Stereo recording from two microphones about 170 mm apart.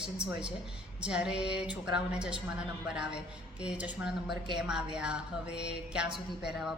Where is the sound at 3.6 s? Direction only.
5° right (ahead or behind).